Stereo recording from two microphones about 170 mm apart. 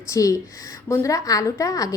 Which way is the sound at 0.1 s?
20° left (ahead or behind).